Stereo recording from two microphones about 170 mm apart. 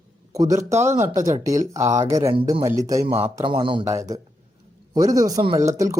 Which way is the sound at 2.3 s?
30° right (ahead or behind).